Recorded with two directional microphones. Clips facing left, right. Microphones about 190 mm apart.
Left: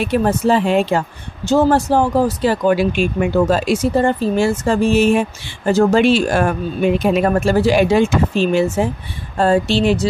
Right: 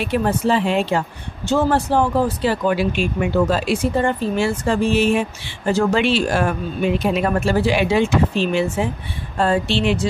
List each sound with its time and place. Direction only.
0.0 s speech: 45° left (ahead or behind)